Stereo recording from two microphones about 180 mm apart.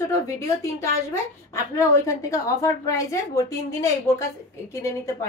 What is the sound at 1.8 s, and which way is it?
A woman's voice, 15° left (ahead or behind).